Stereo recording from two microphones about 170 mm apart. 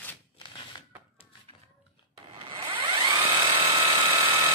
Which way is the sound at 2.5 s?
30° right (ahead or behind).